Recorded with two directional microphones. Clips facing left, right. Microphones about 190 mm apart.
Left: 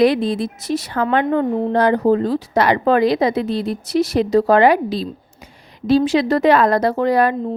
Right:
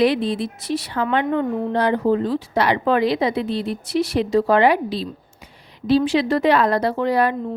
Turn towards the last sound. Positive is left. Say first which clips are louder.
# left 3 dB
turn(degrees=45)  # may be behind; listen again after turning